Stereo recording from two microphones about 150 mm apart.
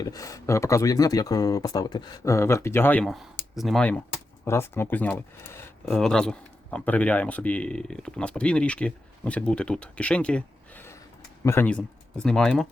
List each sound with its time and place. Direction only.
0.0 s speech: 25° left (ahead or behind)
3.0 s speech: centre (ahead or behind)
4.4 s a man's voice: 15° left (ahead or behind)